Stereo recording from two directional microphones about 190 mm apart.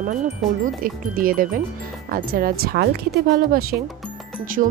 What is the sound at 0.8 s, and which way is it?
Speech, 50° right (ahead or behind).